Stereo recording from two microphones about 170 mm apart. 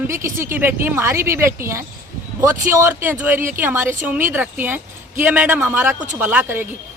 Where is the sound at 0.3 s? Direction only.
15° right (ahead or behind).